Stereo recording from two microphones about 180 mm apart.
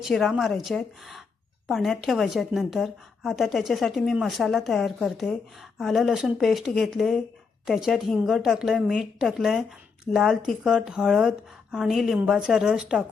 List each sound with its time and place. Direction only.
0.0 s a woman's voice: centre (ahead or behind)